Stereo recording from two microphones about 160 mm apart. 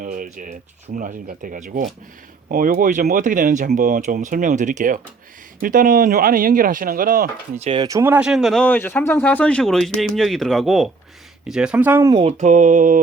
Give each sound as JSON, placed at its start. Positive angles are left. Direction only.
{"t": 0.0, "sound": "speech", "side_deg": -60}
{"t": 7.6, "sound": "speech", "side_deg": -35}
{"t": 7.9, "sound": "speech", "side_deg": -15}
{"t": 12.4, "sound": "speech", "side_deg": -50}